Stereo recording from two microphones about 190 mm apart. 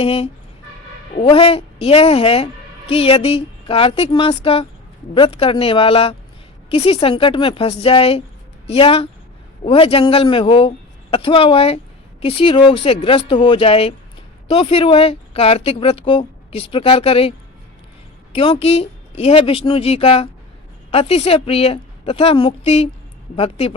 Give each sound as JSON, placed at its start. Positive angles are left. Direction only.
{"t": 0.0, "sound": "a man's voice", "side_deg": 30}
{"t": 18.3, "sound": "a woman's voice", "side_deg": 30}